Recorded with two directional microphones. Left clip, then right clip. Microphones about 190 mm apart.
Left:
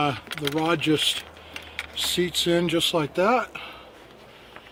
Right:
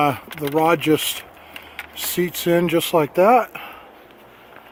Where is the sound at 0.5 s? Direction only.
60° right (ahead or behind).